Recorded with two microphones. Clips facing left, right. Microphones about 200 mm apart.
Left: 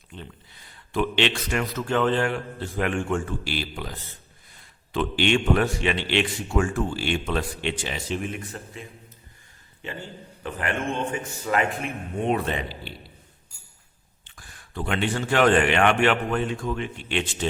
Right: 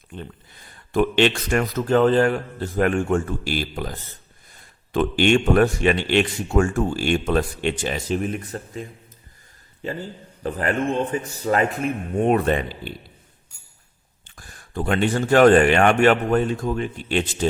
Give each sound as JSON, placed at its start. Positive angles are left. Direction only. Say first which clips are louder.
{"t": 0.1, "sound": "speech", "louder": "right 5 dB", "side_deg": -50}
{"t": 9.8, "sound": "a man's voice", "louder": "right 6 dB", "side_deg": -40}
{"t": 14.3, "sound": "a man's voice", "louder": "right 4 dB", "side_deg": -45}